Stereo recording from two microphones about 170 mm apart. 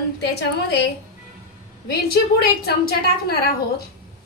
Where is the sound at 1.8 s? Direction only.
65° left (ahead or behind).